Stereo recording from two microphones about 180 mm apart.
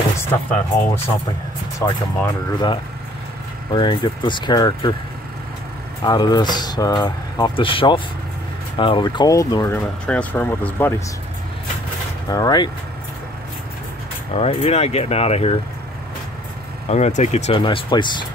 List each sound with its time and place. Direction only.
0.2 s speech: 10° left (ahead or behind)
3.7 s speech: 25° left (ahead or behind)
6.0 s speech: 25° left (ahead or behind)
10.0 s speech: 10° left (ahead or behind)
12.3 s speech: 20° left (ahead or behind)
14.3 s speech: 35° left (ahead or behind)
16.9 s speech: 40° left (ahead or behind)
17.6 s speech: 25° left (ahead or behind)